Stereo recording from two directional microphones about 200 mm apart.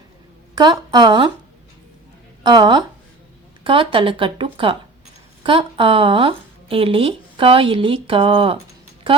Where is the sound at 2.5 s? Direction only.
20° right (ahead or behind).